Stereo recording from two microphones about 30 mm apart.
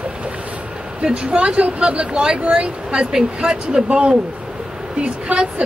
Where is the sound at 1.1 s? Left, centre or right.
Right.